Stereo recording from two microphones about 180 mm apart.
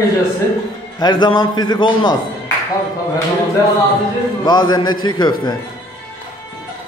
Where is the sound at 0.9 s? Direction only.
25° left (ahead or behind).